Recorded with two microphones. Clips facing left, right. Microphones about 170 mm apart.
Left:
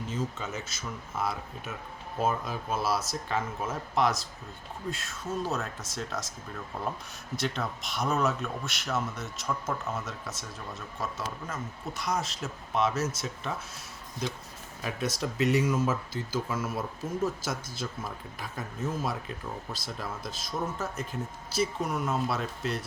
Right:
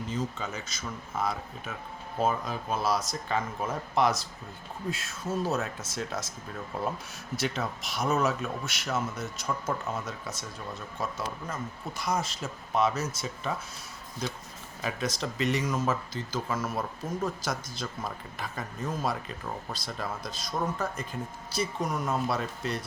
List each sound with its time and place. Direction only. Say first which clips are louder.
0.1 s speech: even; 5° left (ahead or behind)
7.3 s speech: right 1 dB; 5° right (ahead or behind)